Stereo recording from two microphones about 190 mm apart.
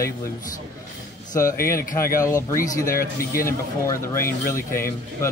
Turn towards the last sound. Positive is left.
turn(degrees=15)  # may be behind; listen again after turning